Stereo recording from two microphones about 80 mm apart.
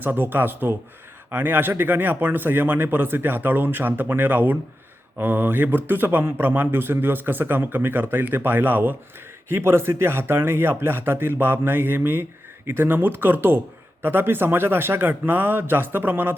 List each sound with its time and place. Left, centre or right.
0.0 s speech: right